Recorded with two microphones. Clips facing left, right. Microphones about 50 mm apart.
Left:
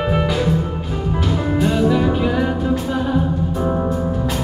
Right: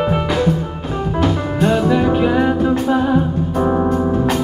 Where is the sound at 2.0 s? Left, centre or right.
Centre.